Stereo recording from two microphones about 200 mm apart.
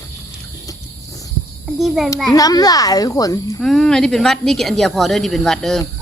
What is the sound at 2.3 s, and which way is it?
A child's voice, 20° left (ahead or behind).